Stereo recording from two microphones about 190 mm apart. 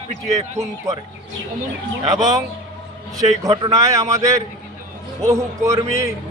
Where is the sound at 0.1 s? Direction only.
35° right (ahead or behind).